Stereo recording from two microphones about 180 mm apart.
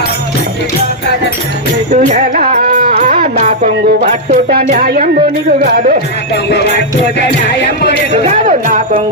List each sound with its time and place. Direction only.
1.9 s speech: 40° right (ahead or behind)
3.0 s music: 45° right (ahead or behind)
4.5 s speech: 60° right (ahead or behind)
6.3 s music: 70° left (ahead or behind)
8.1 s speech: 45° right (ahead or behind)